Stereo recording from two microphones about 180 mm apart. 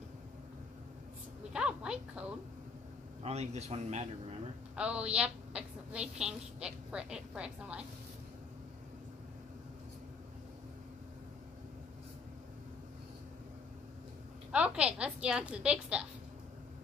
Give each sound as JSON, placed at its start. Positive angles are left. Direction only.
{"t": 1.5, "sound": "a sound", "side_deg": -5}
{"t": 3.2, "sound": "speech", "side_deg": -35}
{"t": 4.7, "sound": "a woman's voice", "side_deg": -5}
{"t": 14.5, "sound": "a woman's voice", "side_deg": -5}